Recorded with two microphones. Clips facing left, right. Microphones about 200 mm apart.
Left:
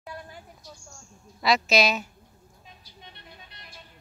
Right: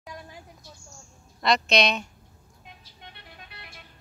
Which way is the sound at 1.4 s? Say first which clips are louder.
Even; 5° left (ahead or behind).